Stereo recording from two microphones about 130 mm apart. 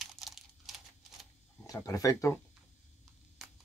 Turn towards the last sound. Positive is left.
turn(degrees=0)  # may be behind; listen again after turning